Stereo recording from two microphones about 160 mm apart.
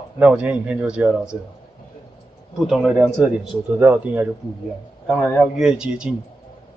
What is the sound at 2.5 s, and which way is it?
Speech, centre (ahead or behind).